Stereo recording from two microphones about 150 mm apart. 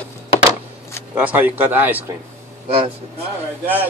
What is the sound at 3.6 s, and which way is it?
Speech, 10° right (ahead or behind).